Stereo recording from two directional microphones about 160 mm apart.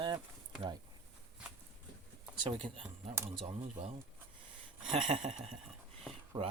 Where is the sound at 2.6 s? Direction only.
35° right (ahead or behind).